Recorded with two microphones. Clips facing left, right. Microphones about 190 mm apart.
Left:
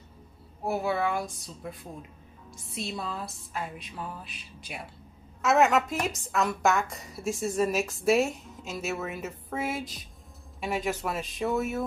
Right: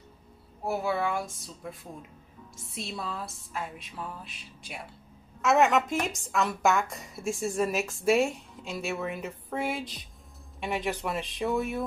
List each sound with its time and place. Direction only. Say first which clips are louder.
0.7 s a woman's voice: left 1 dB; centre (ahead or behind)